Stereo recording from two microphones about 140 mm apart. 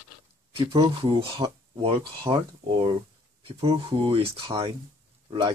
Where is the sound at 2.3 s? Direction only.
20° right (ahead or behind).